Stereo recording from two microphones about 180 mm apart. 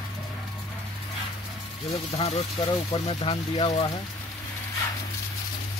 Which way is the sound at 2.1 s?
35° left (ahead or behind).